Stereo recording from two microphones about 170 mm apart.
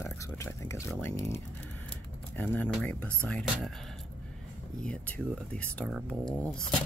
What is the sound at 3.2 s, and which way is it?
Speech, 5° left (ahead or behind).